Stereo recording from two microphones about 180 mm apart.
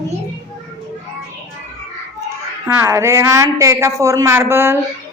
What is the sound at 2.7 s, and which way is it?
A woman's voice, 15° right (ahead or behind).